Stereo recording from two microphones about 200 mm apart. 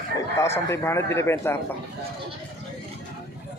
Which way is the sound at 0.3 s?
15° left (ahead or behind).